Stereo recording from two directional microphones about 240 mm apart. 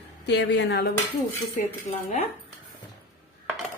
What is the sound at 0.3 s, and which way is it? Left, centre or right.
Speech, left.